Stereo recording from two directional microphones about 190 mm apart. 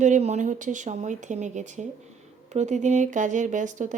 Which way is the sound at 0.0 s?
40° right (ahead or behind).